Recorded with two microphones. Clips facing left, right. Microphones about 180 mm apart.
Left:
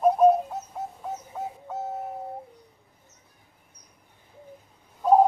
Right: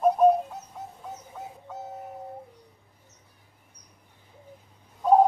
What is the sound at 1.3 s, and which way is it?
Bird, 45° left (ahead or behind).